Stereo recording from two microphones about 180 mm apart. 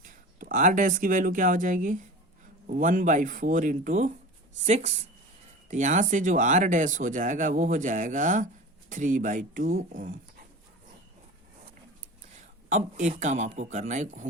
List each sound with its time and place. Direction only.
0.0 s speech: 50° right (ahead or behind)
12.6 s speech: 40° right (ahead or behind)